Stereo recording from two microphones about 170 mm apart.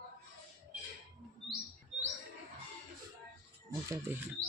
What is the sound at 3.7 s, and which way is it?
Music, 20° right (ahead or behind).